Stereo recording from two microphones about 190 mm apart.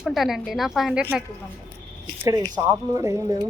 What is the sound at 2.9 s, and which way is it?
Speech, 15° right (ahead or behind).